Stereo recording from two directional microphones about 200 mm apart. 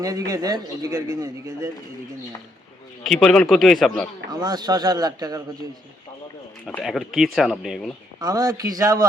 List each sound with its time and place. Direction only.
0.3 s a man's voice: 20° right (ahead or behind)
3.0 s speech: centre (ahead or behind)
4.3 s speech: 20° right (ahead or behind)
6.7 s speech: 5° left (ahead or behind)
8.2 s a man's voice: 20° right (ahead or behind)